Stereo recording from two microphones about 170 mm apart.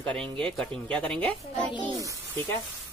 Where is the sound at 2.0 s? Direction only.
20° right (ahead or behind).